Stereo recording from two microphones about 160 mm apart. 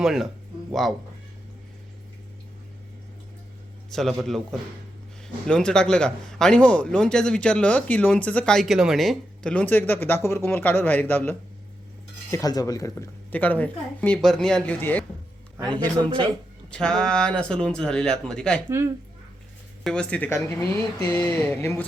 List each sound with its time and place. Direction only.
0.0 s speech: centre (ahead or behind)
3.8 s speech: centre (ahead or behind)
5.5 s a man's voice: 5° left (ahead or behind)
12.3 s a man's voice: 25° left (ahead or behind)
15.5 s speech: 25° right (ahead or behind)
16.7 s speech: 5° left (ahead or behind)
19.8 s a man's voice: 5° left (ahead or behind)